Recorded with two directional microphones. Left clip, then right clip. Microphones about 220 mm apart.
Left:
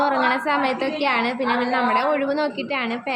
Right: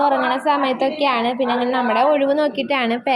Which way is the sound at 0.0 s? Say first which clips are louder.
Right 3 dB; 5° right (ahead or behind).